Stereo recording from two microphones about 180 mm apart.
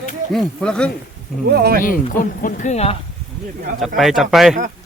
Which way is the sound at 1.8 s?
50° left (ahead or behind).